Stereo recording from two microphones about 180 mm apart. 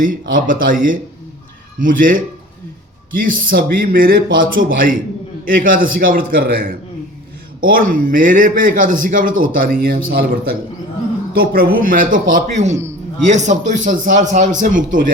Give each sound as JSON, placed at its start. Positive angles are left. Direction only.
{"t": 0.0, "sound": "a man's voice", "side_deg": -50}
{"t": 5.5, "sound": "a man's voice", "side_deg": -50}